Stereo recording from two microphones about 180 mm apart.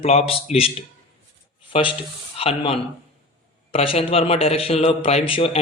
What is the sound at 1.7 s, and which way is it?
A man's voice, 30° left (ahead or behind).